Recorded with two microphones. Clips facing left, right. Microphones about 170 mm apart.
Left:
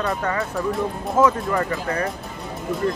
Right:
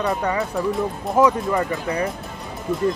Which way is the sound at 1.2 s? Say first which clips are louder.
Right 1 dB; 15° right (ahead or behind).